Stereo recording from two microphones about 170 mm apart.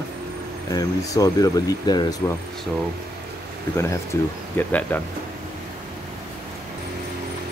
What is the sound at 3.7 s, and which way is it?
Speech, 15° left (ahead or behind).